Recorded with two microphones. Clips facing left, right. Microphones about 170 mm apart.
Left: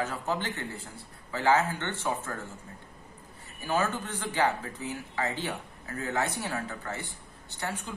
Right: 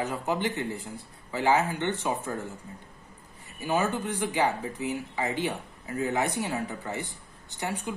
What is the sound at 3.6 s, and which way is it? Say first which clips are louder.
Speech: right 2 dB; 15° right (ahead or behind).